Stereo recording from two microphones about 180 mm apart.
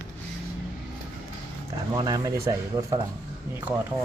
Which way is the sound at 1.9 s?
20° right (ahead or behind).